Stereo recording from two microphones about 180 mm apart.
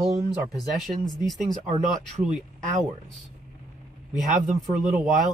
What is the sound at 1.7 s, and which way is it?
Speech, 40° right (ahead or behind).